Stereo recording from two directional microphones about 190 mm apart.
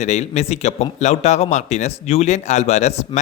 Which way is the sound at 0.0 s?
35° left (ahead or behind).